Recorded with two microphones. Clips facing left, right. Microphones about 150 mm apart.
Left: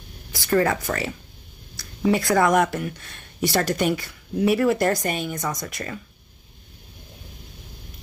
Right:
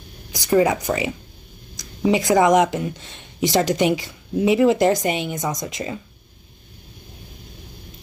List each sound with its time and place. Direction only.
0.3 s speech: 15° right (ahead or behind)